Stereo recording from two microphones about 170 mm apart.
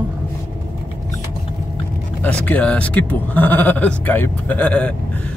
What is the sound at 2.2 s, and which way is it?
Speech, 10° left (ahead or behind).